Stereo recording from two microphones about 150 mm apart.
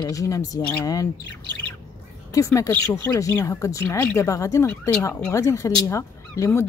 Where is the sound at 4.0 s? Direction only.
10° left (ahead or behind).